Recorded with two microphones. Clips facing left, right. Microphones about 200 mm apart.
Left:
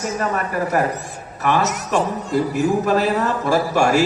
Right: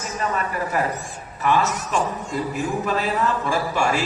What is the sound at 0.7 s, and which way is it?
Speech, 45° left (ahead or behind).